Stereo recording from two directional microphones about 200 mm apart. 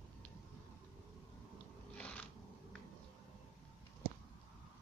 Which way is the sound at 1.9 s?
5° left (ahead or behind).